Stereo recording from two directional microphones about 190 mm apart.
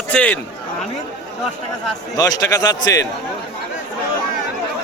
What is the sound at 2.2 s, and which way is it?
Speech, 20° left (ahead or behind).